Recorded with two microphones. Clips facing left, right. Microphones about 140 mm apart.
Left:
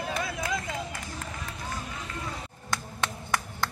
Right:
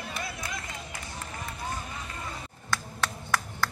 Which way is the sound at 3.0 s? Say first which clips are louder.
Even; 20° left (ahead or behind).